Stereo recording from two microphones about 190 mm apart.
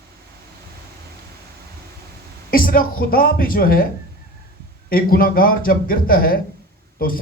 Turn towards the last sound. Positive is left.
turn(degrees=50)  # may be behind; listen again after turning